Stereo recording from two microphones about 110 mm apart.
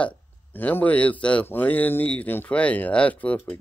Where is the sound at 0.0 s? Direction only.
15° left (ahead or behind).